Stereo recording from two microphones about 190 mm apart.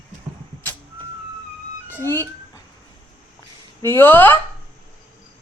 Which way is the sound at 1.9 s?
10° left (ahead or behind).